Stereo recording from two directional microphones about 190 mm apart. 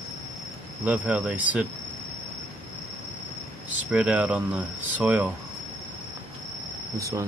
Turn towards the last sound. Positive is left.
turn(degrees=-15)  # may be behind; listen again after turning